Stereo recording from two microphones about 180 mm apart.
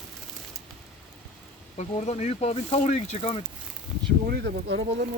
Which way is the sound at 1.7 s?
35° left (ahead or behind).